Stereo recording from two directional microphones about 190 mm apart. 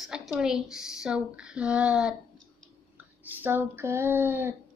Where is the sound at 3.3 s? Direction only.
10° right (ahead or behind).